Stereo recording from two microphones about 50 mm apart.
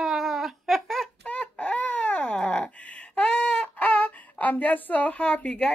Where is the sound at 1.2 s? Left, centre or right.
Left.